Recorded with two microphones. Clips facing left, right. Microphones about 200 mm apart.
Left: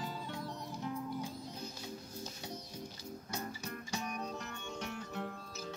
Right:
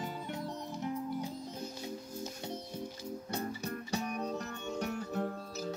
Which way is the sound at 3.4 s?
35° right (ahead or behind).